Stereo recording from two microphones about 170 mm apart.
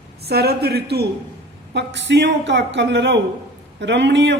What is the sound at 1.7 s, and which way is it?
A woman's voice, 90° right.